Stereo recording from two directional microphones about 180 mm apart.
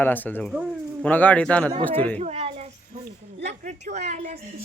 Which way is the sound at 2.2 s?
35° right (ahead or behind).